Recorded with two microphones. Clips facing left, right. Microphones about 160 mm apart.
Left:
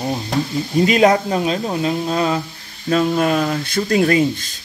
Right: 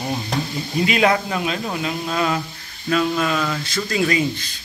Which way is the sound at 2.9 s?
40° left (ahead or behind).